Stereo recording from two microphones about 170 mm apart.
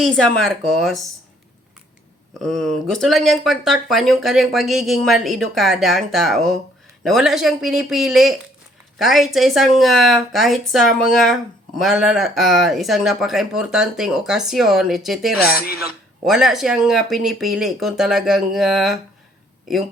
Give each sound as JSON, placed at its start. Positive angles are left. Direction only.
{"t": 0.0, "sound": "speech", "side_deg": 5}
{"t": 2.4, "sound": "speech", "side_deg": 0}
{"t": 15.5, "sound": "speech", "side_deg": 65}
{"t": 16.2, "sound": "speech", "side_deg": 0}